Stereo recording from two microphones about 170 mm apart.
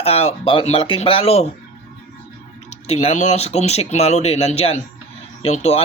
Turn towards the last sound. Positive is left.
turn(degrees=40)  # may be behind; listen again after turning